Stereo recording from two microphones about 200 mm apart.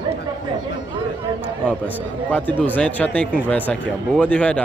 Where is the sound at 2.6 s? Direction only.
5° left (ahead or behind).